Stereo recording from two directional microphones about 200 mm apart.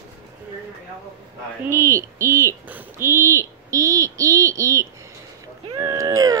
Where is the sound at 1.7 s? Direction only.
15° right (ahead or behind).